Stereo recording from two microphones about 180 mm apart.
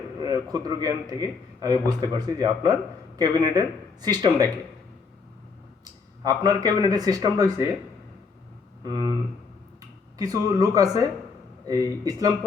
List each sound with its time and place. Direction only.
0.2 s speech: 20° right (ahead or behind)
5.8 s speech: 20° right (ahead or behind)
8.8 s speech: 20° right (ahead or behind)
10.2 s speech: 20° right (ahead or behind)